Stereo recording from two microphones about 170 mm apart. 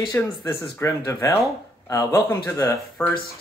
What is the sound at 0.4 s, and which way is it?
Speech, 15° left (ahead or behind).